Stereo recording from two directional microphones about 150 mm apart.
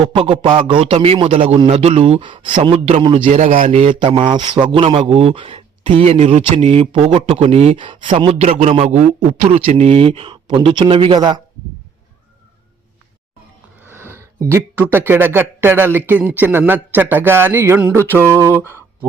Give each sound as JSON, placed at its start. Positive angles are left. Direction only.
{"t": 0.0, "sound": "a man's voice", "side_deg": -35}
{"t": 3.2, "sound": "a man's voice", "side_deg": -60}
{"t": 3.7, "sound": "a man's voice", "side_deg": -40}
{"t": 13.8, "sound": "a sound", "side_deg": -15}
{"t": 14.8, "sound": "speech", "side_deg": -15}